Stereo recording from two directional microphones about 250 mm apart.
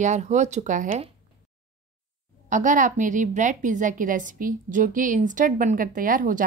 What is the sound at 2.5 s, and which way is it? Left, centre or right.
A woman's voice, right.